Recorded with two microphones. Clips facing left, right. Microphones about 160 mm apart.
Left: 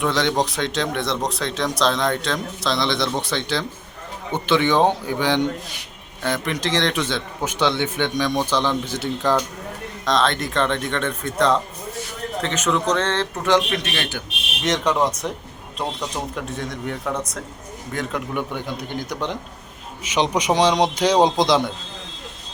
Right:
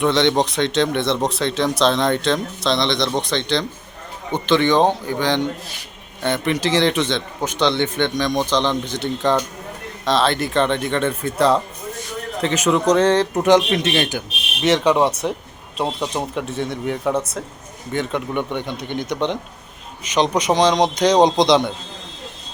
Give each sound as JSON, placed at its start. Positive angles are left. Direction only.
{"t": 0.0, "sound": "a man's voice", "side_deg": 0}
{"t": 6.2, "sound": "a man's voice", "side_deg": 0}
{"t": 14.6, "sound": "speech", "side_deg": -5}
{"t": 15.8, "sound": "a man's voice", "side_deg": -25}
{"t": 16.8, "sound": "a man's voice", "side_deg": -5}